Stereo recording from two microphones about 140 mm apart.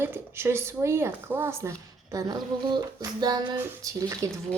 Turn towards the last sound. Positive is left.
turn(degrees=-20)  # may be behind; listen again after turning